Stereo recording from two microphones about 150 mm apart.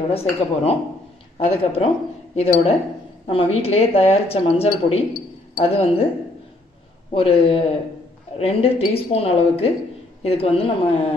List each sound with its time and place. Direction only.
0.1 s speech: 40° left (ahead or behind)
7.1 s speech: 40° left (ahead or behind)